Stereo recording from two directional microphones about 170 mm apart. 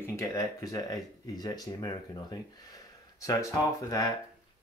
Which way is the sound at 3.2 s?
20° left (ahead or behind).